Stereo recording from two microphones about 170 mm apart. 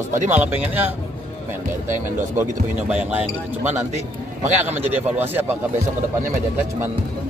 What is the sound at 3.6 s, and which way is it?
Speech, 40° right (ahead or behind).